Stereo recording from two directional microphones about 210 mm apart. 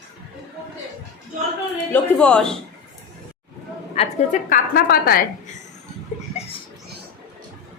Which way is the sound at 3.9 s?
30° left (ahead or behind).